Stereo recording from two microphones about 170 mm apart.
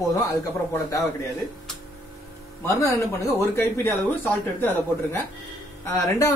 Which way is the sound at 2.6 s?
15° left (ahead or behind).